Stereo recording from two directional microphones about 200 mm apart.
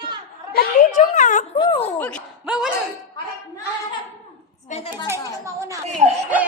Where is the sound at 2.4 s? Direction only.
5° right (ahead or behind).